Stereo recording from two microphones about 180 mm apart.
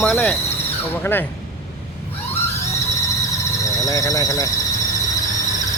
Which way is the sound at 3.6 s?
20° left (ahead or behind).